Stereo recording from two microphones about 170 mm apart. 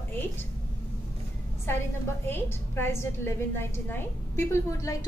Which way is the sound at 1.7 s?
15° left (ahead or behind).